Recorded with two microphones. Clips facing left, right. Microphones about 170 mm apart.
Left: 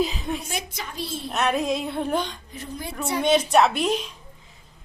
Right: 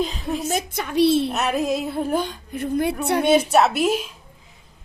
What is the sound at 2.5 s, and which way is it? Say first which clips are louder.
Speech: right 12 dB; 55° right (ahead or behind).